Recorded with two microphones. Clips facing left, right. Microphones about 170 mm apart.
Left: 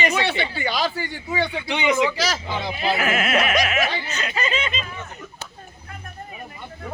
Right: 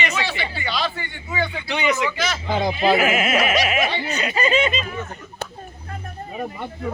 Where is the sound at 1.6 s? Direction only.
20° left (ahead or behind).